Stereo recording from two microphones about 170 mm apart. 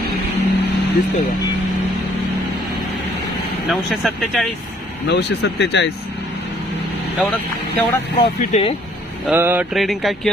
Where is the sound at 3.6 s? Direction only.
Centre (ahead or behind).